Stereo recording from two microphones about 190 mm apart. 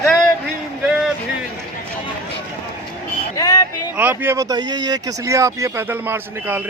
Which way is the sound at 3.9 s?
10° right (ahead or behind).